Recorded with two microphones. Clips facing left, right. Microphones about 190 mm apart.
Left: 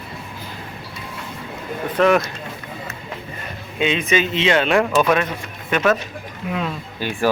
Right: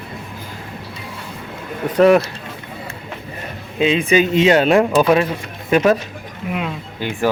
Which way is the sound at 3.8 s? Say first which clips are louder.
Right 4 dB; 35° right (ahead or behind).